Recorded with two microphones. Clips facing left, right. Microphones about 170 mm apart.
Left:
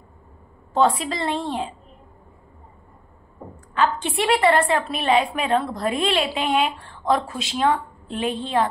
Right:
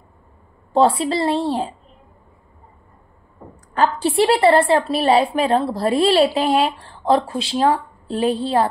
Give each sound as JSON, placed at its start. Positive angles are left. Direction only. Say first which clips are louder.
{"t": 0.7, "sound": "a woman's voice", "louder": "right 4 dB", "side_deg": -30}
{"t": 4.0, "sound": "a woman's voice", "louder": "right 8 dB", "side_deg": -35}